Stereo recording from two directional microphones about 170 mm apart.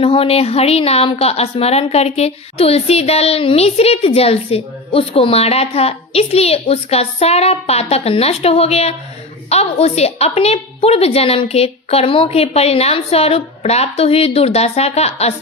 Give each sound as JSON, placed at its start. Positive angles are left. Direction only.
{"t": 0.0, "sound": "a woman's voice", "side_deg": 35}